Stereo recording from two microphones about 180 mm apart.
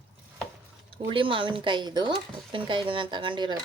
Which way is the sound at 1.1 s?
30° right (ahead or behind).